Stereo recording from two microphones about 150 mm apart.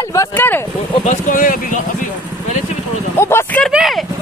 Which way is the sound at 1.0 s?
65° left (ahead or behind).